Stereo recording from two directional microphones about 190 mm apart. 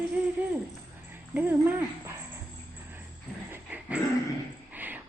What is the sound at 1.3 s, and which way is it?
Speech, 10° right (ahead or behind).